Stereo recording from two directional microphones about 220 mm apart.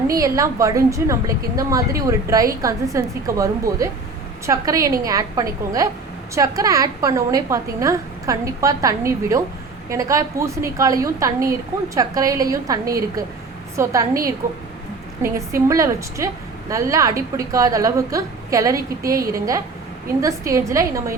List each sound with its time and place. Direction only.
0.1 s a woman's voice: 15° right (ahead or behind)